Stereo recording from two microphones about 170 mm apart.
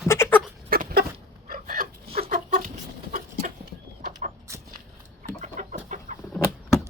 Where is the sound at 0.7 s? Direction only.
60° right (ahead or behind).